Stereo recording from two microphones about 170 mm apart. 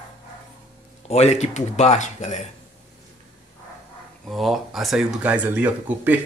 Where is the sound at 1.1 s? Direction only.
40° left (ahead or behind).